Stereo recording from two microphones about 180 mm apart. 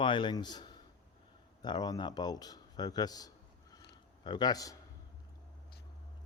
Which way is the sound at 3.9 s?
25° left (ahead or behind).